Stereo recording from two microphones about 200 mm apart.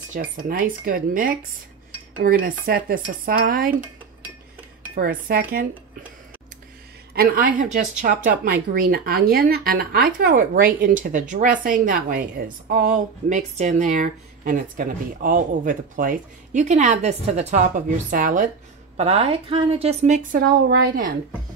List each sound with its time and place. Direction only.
0.1 s speech: 45° right (ahead or behind)
4.9 s speech: 50° right (ahead or behind)
7.2 s speech: 45° right (ahead or behind)
18.9 s speech: 30° right (ahead or behind); by 21.1 s 50° right (ahead or behind)